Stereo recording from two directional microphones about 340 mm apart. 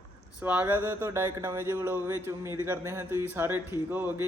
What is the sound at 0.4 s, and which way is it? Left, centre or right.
Speech, centre.